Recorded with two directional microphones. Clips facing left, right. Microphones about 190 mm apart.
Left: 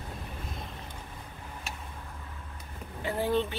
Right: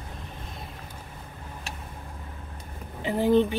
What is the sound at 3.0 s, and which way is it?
Speech, 15° right (ahead or behind).